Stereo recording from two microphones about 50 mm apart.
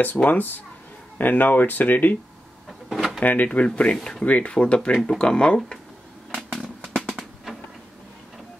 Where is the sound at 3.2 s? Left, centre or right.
Left; by 5.8 s centre.